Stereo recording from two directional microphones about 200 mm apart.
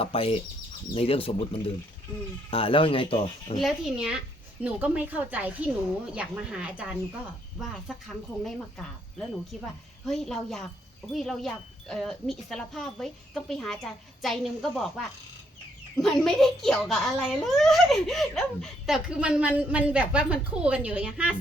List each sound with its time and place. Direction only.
0.0 s speech: 30° left (ahead or behind)
2.5 s speech: 25° left (ahead or behind)
3.6 s a child's voice: centre (ahead or behind)